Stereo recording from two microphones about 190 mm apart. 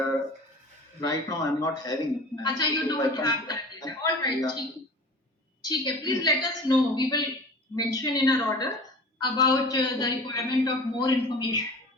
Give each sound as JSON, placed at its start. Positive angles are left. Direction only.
{"t": 1.0, "sound": "a man's voice", "side_deg": 20}
{"t": 5.6, "sound": "a man's voice", "side_deg": 20}